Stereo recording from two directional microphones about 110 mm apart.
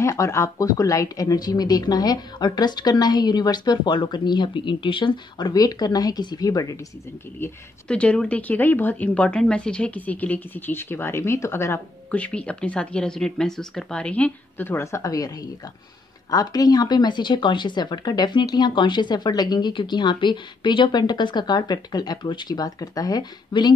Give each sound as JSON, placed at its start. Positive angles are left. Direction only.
{"t": 0.0, "sound": "speech", "side_deg": 30}
{"t": 7.9, "sound": "speech", "side_deg": 10}
{"t": 12.1, "sound": "speech", "side_deg": 10}